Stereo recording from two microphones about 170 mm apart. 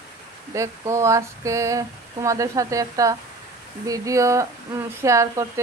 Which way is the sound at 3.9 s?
20° right (ahead or behind).